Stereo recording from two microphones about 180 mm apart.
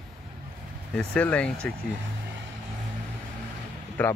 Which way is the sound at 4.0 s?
10° left (ahead or behind).